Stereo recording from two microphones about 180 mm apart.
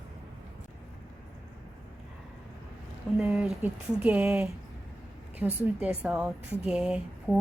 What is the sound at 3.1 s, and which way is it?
Speech, 5° right (ahead or behind).